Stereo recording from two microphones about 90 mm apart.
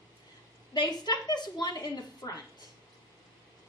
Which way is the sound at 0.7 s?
50° left (ahead or behind).